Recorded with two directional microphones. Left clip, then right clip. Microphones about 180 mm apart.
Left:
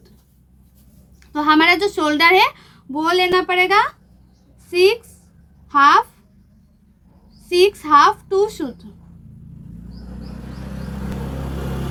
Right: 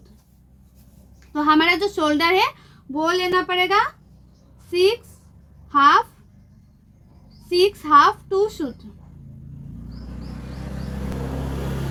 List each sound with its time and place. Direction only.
1.3 s a woman's voice: 25° left (ahead or behind)
7.5 s a woman's voice: 25° left (ahead or behind)